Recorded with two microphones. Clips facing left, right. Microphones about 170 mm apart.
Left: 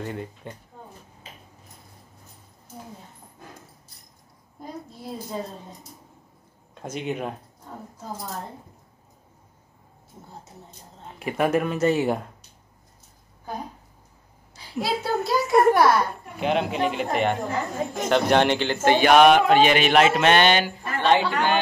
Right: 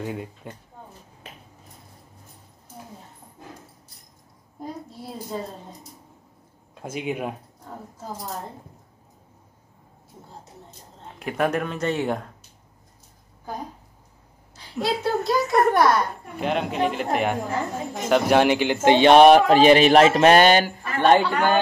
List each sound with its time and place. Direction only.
0.0 s speech: 5° right (ahead or behind)
6.7 s speech: 5° right (ahead or behind)
11.1 s speech: 5° left (ahead or behind)
14.5 s a child's voice: 5° left (ahead or behind); by 18.9 s 10° right (ahead or behind)
18.9 s mantra: 30° right (ahead or behind); by 21.5 s 45° right (ahead or behind)